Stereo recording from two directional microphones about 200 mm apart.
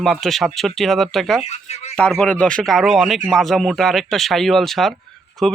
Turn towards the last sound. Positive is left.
turn(degrees=0)  # may be behind; listen again after turning